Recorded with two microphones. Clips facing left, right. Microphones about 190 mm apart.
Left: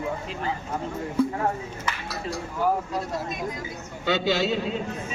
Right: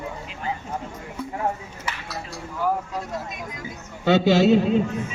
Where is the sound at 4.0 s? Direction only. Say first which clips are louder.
Right 7 dB; 50° right (ahead or behind).